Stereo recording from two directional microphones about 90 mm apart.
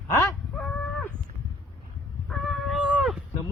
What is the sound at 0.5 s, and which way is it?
Cattle, 10° left (ahead or behind).